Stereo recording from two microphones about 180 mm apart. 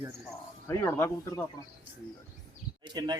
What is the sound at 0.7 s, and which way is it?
Speech, 15° left (ahead or behind).